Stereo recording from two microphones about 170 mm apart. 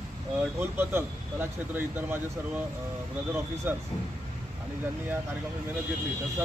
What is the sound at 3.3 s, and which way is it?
Speech, 15° right (ahead or behind).